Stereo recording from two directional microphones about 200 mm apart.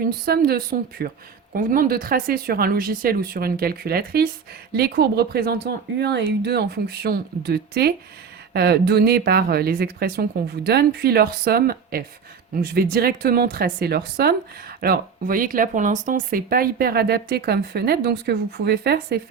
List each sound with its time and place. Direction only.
0.3 s speech: 50° right (ahead or behind)